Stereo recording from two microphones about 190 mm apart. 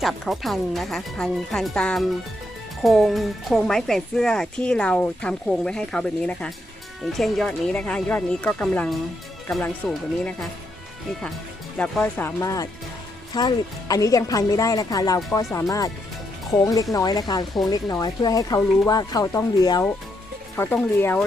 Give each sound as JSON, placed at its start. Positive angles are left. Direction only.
{"t": 0.0, "sound": "a woman's voice", "side_deg": 0}
{"t": 11.8, "sound": "speech", "side_deg": 5}